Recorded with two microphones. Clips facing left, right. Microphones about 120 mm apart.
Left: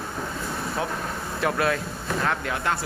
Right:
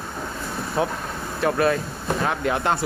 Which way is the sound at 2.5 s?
25° right (ahead or behind).